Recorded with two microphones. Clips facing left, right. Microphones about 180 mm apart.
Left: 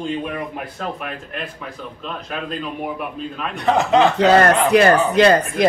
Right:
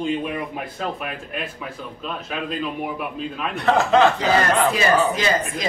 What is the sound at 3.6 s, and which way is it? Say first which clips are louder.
Speech: left 1 dB; 20° left (ahead or behind).